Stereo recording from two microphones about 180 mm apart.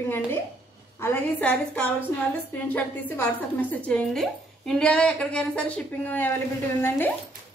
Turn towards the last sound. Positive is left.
turn(degrees=10)  # may be behind; listen again after turning